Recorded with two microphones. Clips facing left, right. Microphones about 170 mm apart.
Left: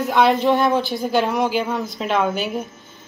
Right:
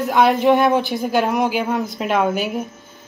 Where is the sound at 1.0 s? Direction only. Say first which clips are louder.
Right 1 dB; 10° right (ahead or behind).